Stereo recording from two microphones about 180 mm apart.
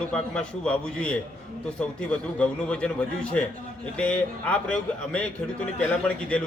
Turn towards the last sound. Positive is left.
turn(degrees=5)  # may be behind; listen again after turning